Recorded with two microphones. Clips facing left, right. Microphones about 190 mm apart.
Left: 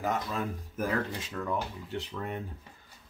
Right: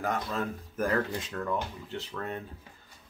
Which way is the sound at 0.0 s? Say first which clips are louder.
Even; 5° left (ahead or behind).